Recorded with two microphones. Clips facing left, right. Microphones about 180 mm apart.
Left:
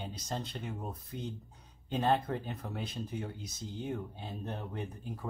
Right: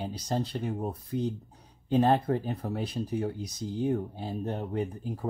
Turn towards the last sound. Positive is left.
turn(degrees=-35)  # may be behind; listen again after turning